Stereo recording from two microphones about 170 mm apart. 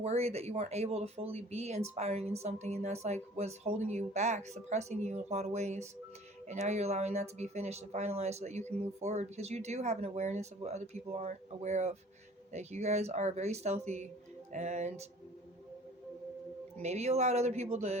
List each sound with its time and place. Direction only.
0.0 s speech: 40° right (ahead or behind)
14.5 s music: 45° right (ahead or behind)
16.8 s speech: 40° right (ahead or behind)